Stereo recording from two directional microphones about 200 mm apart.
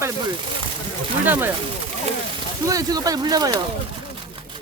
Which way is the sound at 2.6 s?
20° right (ahead or behind).